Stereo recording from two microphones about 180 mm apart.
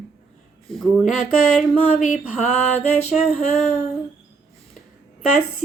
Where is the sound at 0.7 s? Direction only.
Centre (ahead or behind).